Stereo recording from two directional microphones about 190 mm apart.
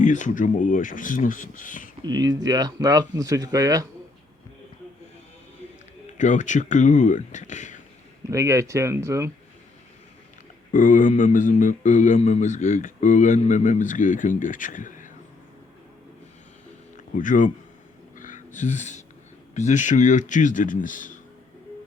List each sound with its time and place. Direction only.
0.0 s speech: 40° left (ahead or behind)
2.0 s speech: 20° right (ahead or behind)
6.1 s speech: 40° left (ahead or behind)
8.3 s speech: 15° right (ahead or behind)
10.7 s speech: 45° left (ahead or behind)
17.2 s speech: 45° left (ahead or behind)
18.2 s music: 40° left (ahead or behind)
19.5 s speech: 40° left (ahead or behind)